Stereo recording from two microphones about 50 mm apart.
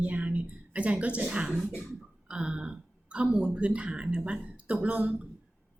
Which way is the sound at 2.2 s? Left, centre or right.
Centre.